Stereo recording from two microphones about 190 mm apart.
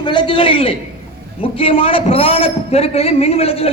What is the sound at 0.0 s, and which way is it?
A man's voice, 25° left (ahead or behind).